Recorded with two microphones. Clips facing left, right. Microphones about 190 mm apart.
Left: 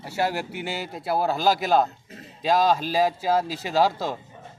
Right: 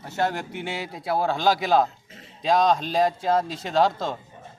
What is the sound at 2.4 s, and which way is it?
A man's voice, 5° left (ahead or behind).